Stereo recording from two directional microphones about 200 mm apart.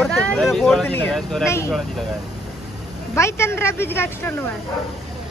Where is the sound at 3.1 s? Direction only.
15° left (ahead or behind).